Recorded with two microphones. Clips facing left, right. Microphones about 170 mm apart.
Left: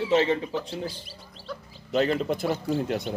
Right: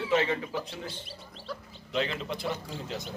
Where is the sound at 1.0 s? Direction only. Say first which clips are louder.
Left 1 dB; centre (ahead or behind).